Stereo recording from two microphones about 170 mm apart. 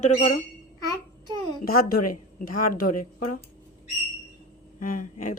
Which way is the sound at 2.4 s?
55° left (ahead or behind).